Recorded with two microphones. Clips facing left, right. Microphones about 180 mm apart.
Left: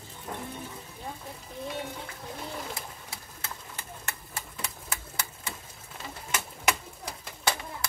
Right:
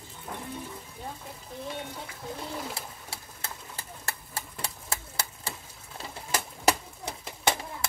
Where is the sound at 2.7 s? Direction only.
30° right (ahead or behind).